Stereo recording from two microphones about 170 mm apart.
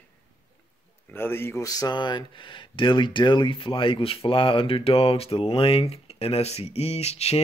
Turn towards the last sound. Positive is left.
turn(degrees=40)  # may be behind; listen again after turning